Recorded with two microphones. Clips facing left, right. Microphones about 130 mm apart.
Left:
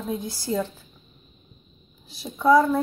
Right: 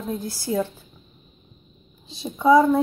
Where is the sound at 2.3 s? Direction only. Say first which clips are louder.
Right 2 dB; 15° right (ahead or behind).